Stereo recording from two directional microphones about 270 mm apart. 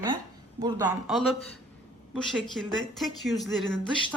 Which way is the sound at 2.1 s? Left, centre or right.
Centre.